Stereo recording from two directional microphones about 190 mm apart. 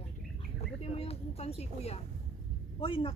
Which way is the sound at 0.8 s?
35° left (ahead or behind).